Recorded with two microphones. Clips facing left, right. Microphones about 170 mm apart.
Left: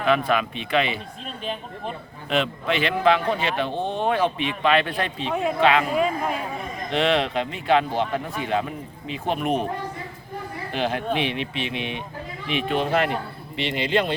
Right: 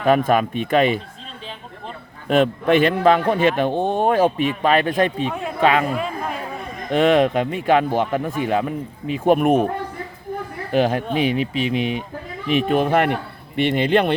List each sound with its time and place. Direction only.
0.0 s a man's voice: 45° right (ahead or behind)
2.2 s a man's voice: 50° right (ahead or behind)
5.3 s speech: centre (ahead or behind)
5.5 s a man's voice: 45° right (ahead or behind)
6.9 s a man's voice: 45° right (ahead or behind)
10.7 s a man's voice: 45° right (ahead or behind)